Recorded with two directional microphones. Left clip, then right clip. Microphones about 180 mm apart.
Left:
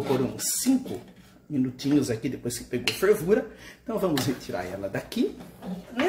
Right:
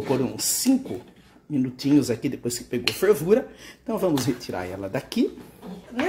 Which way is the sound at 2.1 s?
50° right (ahead or behind).